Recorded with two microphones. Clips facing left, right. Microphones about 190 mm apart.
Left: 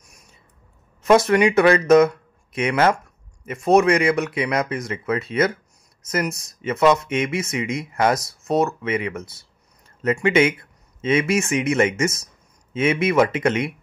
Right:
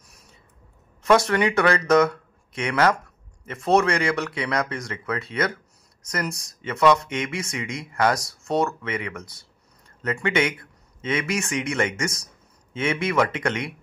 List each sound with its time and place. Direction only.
1.0 s speech: 20° left (ahead or behind)